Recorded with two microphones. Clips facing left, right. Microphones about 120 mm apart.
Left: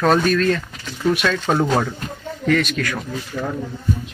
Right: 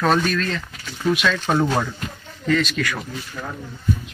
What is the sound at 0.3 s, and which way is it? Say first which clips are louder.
Speech: left 6 dB; 45° left (ahead or behind).